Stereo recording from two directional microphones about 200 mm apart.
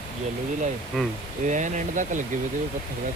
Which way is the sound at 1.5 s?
40° right (ahead or behind).